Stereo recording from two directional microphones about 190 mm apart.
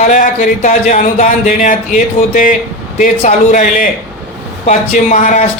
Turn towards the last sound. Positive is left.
turn(degrees=40)  # may be behind; listen again after turning